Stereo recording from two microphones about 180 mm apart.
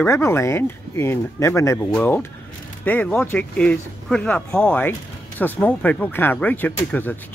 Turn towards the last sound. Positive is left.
turn(degrees=10)  # may be behind; listen again after turning